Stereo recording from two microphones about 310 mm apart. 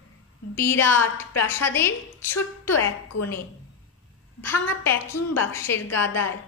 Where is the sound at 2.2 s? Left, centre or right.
Left.